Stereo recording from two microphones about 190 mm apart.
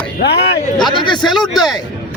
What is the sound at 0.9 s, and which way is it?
Speech, 25° left (ahead or behind).